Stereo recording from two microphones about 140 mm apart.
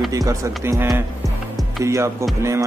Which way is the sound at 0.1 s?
25° right (ahead or behind).